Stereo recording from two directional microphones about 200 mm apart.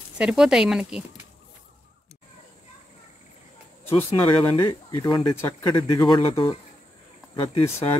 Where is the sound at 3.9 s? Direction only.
25° left (ahead or behind).